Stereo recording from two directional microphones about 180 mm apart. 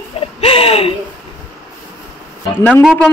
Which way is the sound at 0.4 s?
30° left (ahead or behind).